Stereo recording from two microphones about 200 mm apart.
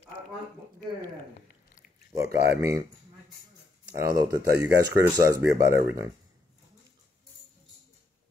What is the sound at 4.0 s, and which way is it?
Speech, 15° right (ahead or behind).